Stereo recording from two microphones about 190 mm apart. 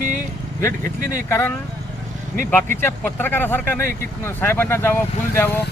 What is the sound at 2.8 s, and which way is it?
Speech, 10° left (ahead or behind).